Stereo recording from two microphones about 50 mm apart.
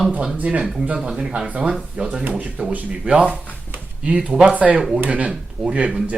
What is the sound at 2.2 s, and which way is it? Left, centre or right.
Speech, right.